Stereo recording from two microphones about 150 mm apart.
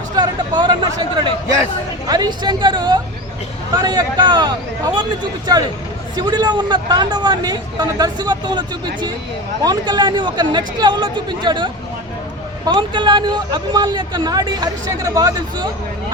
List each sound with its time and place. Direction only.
0.2 s speech: 30° right (ahead or behind)